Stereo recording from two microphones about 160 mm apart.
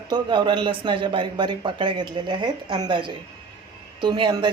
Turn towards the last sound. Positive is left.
turn(degrees=-30)  # may be behind; listen again after turning